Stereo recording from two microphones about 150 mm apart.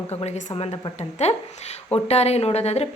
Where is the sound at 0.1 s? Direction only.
45° left (ahead or behind).